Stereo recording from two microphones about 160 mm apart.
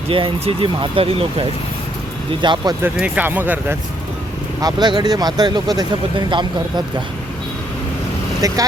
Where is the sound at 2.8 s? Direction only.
10° right (ahead or behind).